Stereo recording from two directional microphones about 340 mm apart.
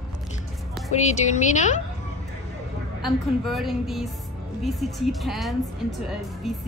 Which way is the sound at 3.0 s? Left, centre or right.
Centre.